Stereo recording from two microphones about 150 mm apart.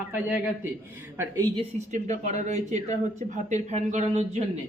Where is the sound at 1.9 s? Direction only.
50° right (ahead or behind).